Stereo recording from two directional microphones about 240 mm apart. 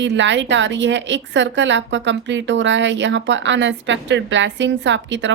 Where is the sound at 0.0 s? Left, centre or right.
Right.